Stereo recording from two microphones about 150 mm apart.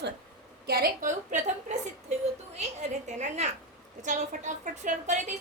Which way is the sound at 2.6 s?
50° right (ahead or behind).